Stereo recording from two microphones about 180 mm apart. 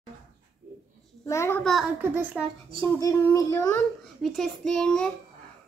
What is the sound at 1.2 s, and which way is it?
Speech, 15° left (ahead or behind).